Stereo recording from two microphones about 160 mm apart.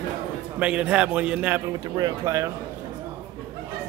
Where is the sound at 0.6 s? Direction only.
10° right (ahead or behind).